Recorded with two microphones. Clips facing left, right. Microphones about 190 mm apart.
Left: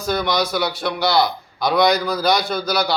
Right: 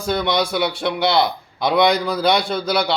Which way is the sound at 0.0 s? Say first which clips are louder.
Right 1 dB; 25° right (ahead or behind).